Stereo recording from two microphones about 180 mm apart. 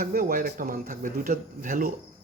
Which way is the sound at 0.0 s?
50° right (ahead or behind).